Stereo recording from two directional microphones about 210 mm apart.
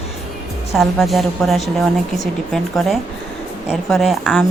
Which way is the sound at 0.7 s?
Centre (ahead or behind).